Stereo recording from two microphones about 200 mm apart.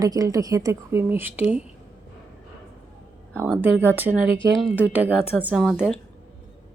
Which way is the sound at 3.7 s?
10° right (ahead or behind).